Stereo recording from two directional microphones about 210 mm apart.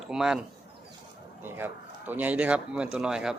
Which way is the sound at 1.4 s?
10° right (ahead or behind).